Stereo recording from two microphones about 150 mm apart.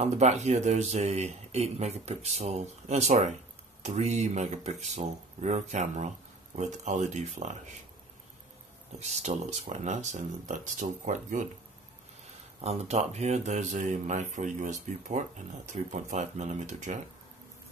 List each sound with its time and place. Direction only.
0.0 s speech: 50° right (ahead or behind)
9.0 s speech: 50° right (ahead or behind)
12.6 s speech: 45° right (ahead or behind)